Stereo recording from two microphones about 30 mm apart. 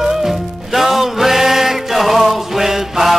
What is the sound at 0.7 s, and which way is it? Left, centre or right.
Music, centre.